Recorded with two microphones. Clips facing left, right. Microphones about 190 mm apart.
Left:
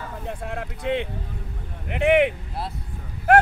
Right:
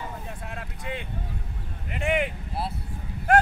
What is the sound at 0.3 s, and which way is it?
Speech, 55° left (ahead or behind).